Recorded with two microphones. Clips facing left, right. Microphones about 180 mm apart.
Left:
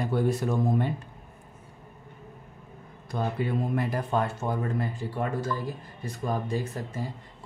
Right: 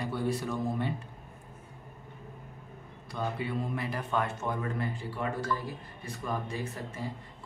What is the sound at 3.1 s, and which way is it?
Speech, 45° left (ahead or behind).